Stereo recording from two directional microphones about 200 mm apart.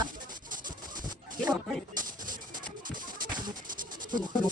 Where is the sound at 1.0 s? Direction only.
20° right (ahead or behind).